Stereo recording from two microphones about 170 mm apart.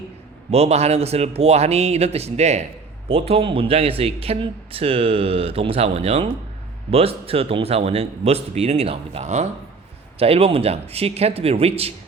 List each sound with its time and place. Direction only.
0.5 s speech: 40° right (ahead or behind)